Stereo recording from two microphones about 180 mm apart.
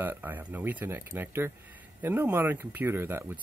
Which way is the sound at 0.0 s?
10° right (ahead or behind).